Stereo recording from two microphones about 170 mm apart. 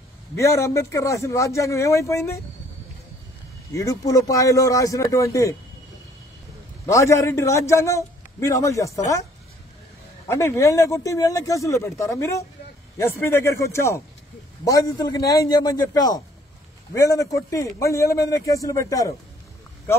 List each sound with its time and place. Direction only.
0.4 s a man's voice: 15° left (ahead or behind)
3.7 s speech: 20° left (ahead or behind)
6.9 s a man's voice: 15° left (ahead or behind)
10.2 s a man's voice: 15° left (ahead or behind)